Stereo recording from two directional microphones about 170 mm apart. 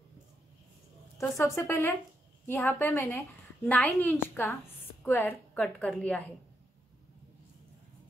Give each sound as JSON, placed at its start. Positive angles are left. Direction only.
{"t": 1.1, "sound": "a woman's voice", "side_deg": 20}